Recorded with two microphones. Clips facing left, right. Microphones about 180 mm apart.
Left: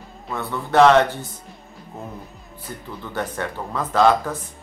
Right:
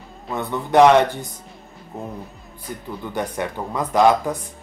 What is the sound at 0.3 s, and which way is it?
Speech, 20° right (ahead or behind).